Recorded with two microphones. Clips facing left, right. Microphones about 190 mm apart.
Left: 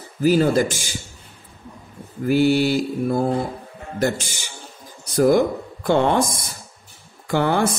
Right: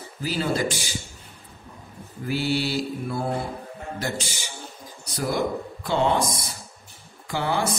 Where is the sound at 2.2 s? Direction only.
50° left (ahead or behind).